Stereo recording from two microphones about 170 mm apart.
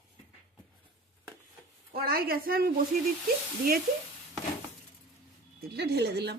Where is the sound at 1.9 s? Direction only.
60° right (ahead or behind).